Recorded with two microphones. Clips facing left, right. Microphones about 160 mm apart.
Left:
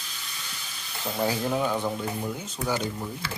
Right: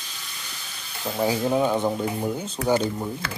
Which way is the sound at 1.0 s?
10° right (ahead or behind).